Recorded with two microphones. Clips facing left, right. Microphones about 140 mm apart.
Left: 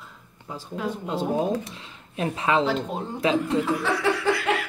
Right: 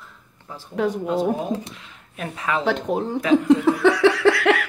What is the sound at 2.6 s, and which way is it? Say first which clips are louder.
Speech: right 4 dB; 70° right (ahead or behind).